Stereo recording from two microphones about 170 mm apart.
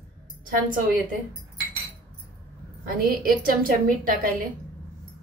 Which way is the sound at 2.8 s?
60° right (ahead or behind).